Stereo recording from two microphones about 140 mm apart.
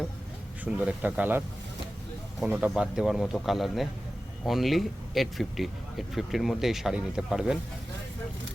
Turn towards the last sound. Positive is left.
turn(degrees=-5)  # may be behind; listen again after turning